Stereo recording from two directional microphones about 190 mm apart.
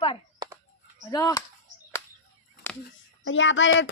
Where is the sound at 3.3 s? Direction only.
90° left.